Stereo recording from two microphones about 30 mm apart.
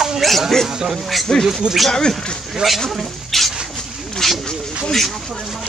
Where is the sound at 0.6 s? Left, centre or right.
Centre.